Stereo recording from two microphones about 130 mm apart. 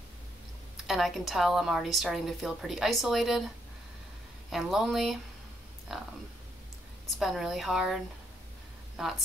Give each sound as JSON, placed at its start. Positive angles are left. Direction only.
{"t": 0.8, "sound": "a woman's voice", "side_deg": 0}
{"t": 4.5, "sound": "a woman's voice", "side_deg": 0}
{"t": 7.2, "sound": "a woman's voice", "side_deg": 0}